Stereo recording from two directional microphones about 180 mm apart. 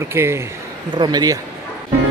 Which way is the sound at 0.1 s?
15° right (ahead or behind).